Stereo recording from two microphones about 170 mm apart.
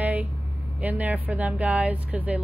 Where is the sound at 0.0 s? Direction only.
10° right (ahead or behind).